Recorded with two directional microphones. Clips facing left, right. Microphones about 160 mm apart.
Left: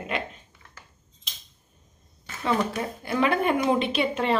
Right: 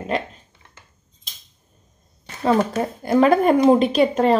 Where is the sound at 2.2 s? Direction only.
40° right (ahead or behind).